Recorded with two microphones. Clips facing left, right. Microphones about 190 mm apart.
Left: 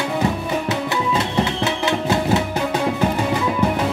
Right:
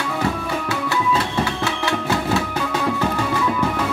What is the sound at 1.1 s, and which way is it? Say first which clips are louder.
Music: left 1 dB; 20° left (ahead or behind).